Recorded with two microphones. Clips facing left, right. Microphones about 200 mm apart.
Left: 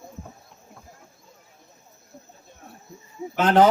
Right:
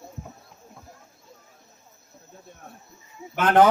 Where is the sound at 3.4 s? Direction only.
55° right (ahead or behind).